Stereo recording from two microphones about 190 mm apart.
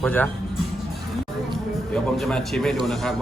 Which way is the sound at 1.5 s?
Centre (ahead or behind).